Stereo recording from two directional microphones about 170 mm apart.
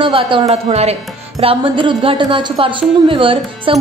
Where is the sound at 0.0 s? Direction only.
30° right (ahead or behind).